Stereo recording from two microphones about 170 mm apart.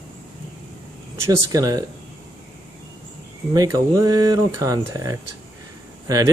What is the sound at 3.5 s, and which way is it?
Speech, 20° right (ahead or behind).